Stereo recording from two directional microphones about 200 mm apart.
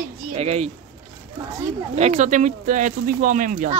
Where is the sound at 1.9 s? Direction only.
35° right (ahead or behind).